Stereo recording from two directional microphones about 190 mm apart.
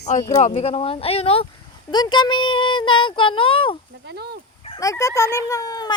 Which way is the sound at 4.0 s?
60° right (ahead or behind).